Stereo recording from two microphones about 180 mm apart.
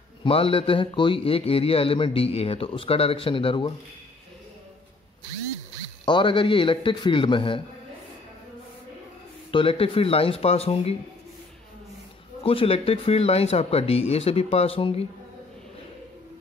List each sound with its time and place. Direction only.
0.2 s a man's voice: 30° left (ahead or behind)
6.0 s a man's voice: 25° left (ahead or behind)
9.5 s a man's voice: 30° left (ahead or behind)
12.4 s a man's voice: 30° left (ahead or behind)